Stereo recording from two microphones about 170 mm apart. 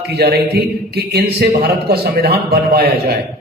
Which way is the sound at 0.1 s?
70° right (ahead or behind).